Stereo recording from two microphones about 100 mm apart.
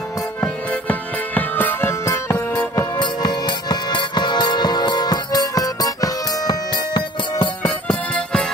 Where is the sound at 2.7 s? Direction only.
40° left (ahead or behind).